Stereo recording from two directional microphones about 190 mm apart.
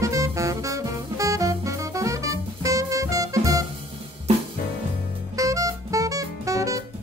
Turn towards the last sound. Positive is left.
turn(degrees=-15)  # may be behind; listen again after turning